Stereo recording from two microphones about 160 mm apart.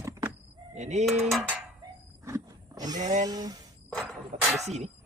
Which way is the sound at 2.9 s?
50° right (ahead or behind).